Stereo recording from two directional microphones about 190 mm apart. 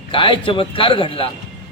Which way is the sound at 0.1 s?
25° left (ahead or behind).